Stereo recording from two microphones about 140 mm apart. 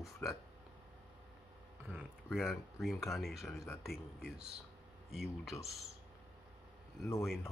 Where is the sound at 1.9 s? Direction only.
15° right (ahead or behind).